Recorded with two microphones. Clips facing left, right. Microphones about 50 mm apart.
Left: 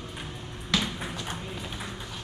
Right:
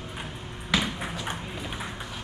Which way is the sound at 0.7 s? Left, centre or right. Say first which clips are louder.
Right 2 dB; centre.